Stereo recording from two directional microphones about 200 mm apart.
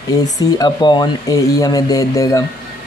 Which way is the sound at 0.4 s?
20° left (ahead or behind).